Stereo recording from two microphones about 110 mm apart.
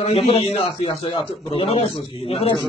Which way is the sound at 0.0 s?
65° left (ahead or behind).